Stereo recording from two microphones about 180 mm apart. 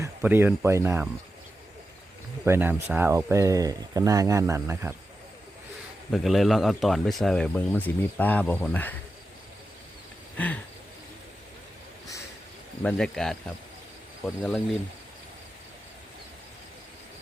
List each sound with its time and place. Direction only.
0.0 s speech: 10° right (ahead or behind)
2.4 s speech: 10° right (ahead or behind)
6.1 s speech: centre (ahead or behind)
10.3 s a sound: 10° left (ahead or behind)
12.8 s speech: 5° left (ahead or behind)